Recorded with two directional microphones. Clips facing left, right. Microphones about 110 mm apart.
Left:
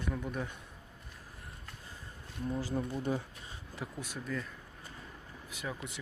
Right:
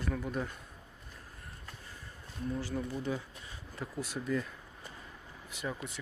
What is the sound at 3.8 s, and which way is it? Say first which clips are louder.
Speech: right 1 dB; 5° left (ahead or behind).